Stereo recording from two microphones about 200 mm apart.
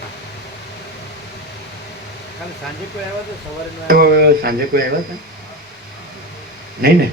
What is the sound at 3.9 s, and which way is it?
Speech, 50° right (ahead or behind).